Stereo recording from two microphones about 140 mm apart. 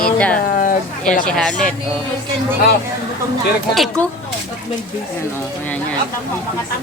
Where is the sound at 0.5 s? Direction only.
70° left (ahead or behind).